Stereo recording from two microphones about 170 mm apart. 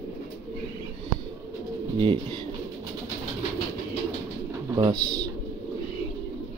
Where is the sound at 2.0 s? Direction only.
30° right (ahead or behind).